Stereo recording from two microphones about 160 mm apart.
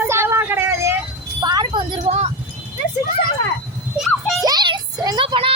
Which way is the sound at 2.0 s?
45° right (ahead or behind).